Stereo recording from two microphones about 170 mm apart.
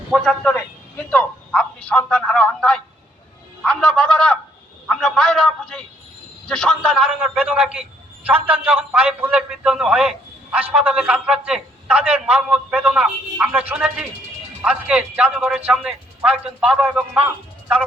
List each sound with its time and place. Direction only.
0.1 s a man's voice: 5° left (ahead or behind)
1.1 s telephone: 5° left (ahead or behind)
3.7 s a sound: 5° left (ahead or behind)
6.5 s a man's voice: 5° left (ahead or behind)